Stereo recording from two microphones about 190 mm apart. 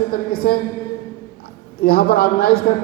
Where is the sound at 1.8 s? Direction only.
50° left (ahead or behind).